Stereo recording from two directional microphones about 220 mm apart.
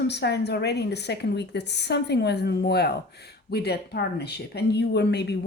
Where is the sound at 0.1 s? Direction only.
50° left (ahead or behind).